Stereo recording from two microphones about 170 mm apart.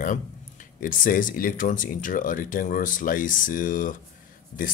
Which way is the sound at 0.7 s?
55° left (ahead or behind).